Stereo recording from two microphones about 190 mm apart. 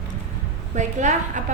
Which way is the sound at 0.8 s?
40° right (ahead or behind).